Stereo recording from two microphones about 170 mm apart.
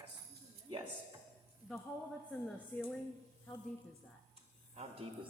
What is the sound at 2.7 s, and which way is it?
Speech, 10° left (ahead or behind).